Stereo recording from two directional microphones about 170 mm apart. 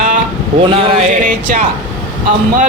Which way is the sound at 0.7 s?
35° right (ahead or behind).